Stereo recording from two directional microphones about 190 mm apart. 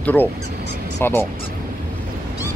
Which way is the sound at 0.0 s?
10° left (ahead or behind).